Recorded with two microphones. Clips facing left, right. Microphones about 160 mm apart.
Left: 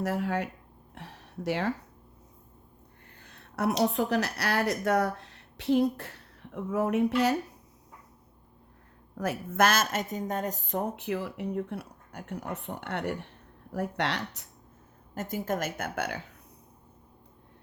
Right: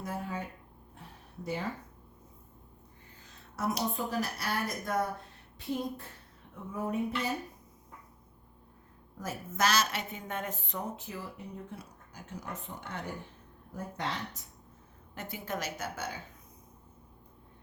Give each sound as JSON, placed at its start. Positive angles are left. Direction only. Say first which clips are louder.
{"t": 0.0, "sound": "speech", "louder": "left 8 dB", "side_deg": 80}
{"t": 0.9, "sound": "a sound", "louder": "left 6 dB", "side_deg": 80}
{"t": 3.2, "sound": "speech", "louder": "left 5 dB", "side_deg": 60}
{"t": 9.1, "sound": "speech", "louder": "left 8 dB", "side_deg": 60}
{"t": 15.1, "sound": "a woman's voice", "louder": "left 7 dB", "side_deg": 45}